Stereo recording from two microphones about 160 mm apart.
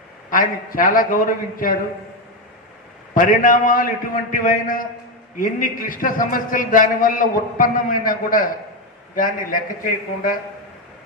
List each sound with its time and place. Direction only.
0.3 s a man's voice: 60° left (ahead or behind)
3.2 s a man's voice: 55° left (ahead or behind)